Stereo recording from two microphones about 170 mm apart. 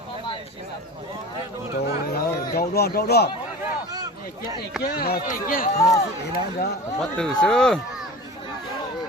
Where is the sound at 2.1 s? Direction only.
65° left (ahead or behind).